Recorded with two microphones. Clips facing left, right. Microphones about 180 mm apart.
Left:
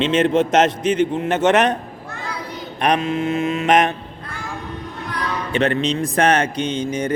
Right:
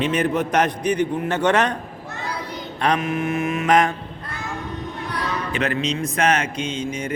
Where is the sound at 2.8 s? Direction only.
25° left (ahead or behind).